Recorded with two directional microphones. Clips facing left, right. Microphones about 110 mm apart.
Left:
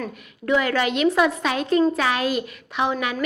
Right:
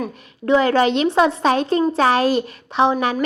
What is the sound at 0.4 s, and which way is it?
Speech, 30° right (ahead or behind).